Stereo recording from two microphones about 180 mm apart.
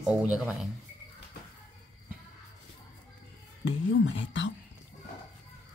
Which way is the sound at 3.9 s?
90° left.